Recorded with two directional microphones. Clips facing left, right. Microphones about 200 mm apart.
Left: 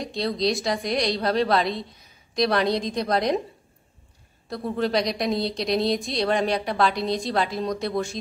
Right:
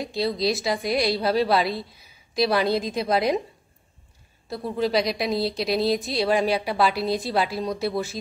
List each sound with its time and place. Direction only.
0.0 s a woman's voice: 5° right (ahead or behind)
4.5 s a woman's voice: centre (ahead or behind)